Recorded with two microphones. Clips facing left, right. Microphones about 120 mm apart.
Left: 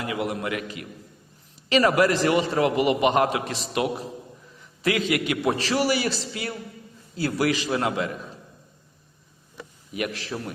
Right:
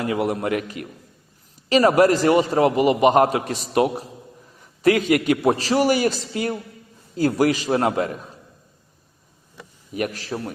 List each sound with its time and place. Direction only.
0.0 s a man's voice: 40° right (ahead or behind)
4.5 s a sound: 45° right (ahead or behind)
5.5 s a man's voice: 40° right (ahead or behind)
9.9 s a man's voice: 40° right (ahead or behind)